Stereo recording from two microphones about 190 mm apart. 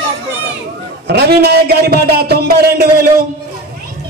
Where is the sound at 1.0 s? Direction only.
60° right (ahead or behind).